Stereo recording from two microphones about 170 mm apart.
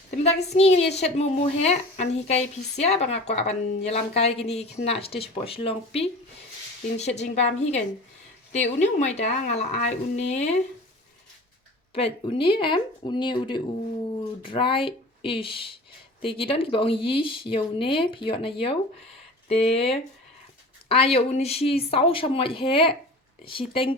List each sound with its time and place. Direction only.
0.1 s a woman's voice: 45° left (ahead or behind)
11.9 s speech: 35° left (ahead or behind)